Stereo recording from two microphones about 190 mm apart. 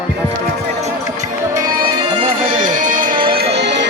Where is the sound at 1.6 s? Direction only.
20° right (ahead or behind).